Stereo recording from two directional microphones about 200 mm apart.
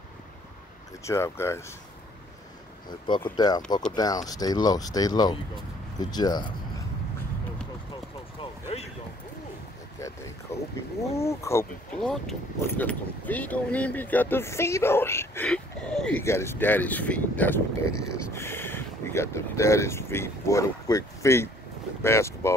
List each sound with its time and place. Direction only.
1.0 s speech: 15° left (ahead or behind)
3.3 s speech: 20° left (ahead or behind)
8.4 s a sound: 30° left (ahead or behind)
9.9 s a sound: 15° left (ahead or behind)
11.1 s speech: 15° left (ahead or behind)
12.0 s speech: centre (ahead or behind)